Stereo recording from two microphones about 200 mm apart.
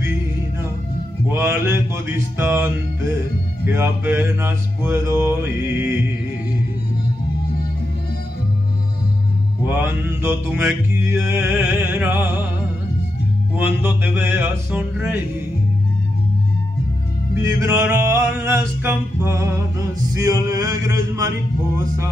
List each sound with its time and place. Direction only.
1.3 s mantra: 10° right (ahead or behind)
9.7 s mantra: 10° right (ahead or behind)
11.2 s music: 10° right (ahead or behind)
13.6 s mantra: 10° right (ahead or behind)
17.3 s mantra: 15° right (ahead or behind)